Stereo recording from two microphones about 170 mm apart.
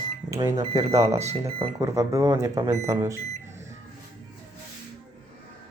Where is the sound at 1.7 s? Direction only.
15° right (ahead or behind).